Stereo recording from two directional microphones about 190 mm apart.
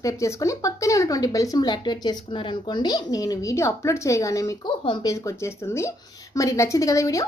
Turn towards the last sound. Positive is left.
turn(degrees=15)  # may be behind; listen again after turning